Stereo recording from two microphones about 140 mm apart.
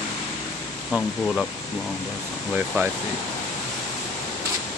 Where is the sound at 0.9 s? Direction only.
5° left (ahead or behind).